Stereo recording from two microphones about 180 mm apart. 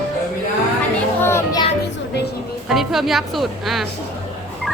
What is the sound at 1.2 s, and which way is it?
Music, 15° left (ahead or behind).